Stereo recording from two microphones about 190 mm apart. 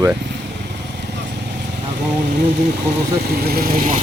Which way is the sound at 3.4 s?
55° right (ahead or behind).